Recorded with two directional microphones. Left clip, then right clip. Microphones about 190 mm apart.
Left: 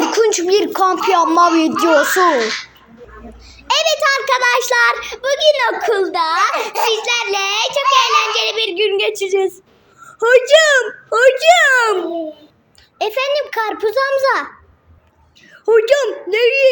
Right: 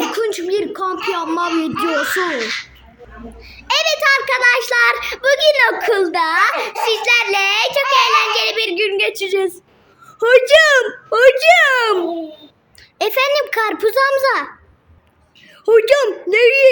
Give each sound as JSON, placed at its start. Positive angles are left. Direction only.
{"t": 0.1, "sound": "a child's voice", "side_deg": -5}
{"t": 1.1, "sound": "speech", "side_deg": -15}
{"t": 3.7, "sound": "a child's voice", "side_deg": 0}
{"t": 4.9, "sound": "a child's voice", "side_deg": -10}
{"t": 13.0, "sound": "a child's voice", "side_deg": -20}
{"t": 15.6, "sound": "a child's voice", "side_deg": -15}